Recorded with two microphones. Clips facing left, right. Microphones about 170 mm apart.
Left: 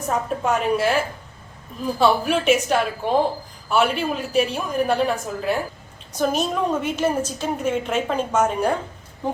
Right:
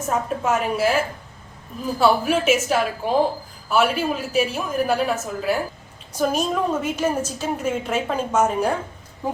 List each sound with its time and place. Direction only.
0.1 s a woman's voice: 5° right (ahead or behind)